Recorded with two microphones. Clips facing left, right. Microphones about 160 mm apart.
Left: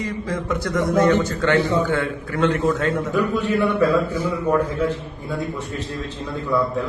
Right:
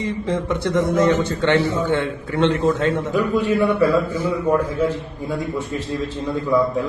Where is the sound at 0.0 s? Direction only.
25° right (ahead or behind).